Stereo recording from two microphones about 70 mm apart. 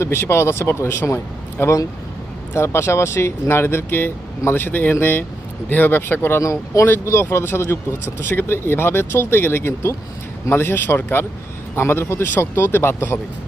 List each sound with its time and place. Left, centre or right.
0.0 s speech: left
6.4 s speech: left
6.8 s speech: left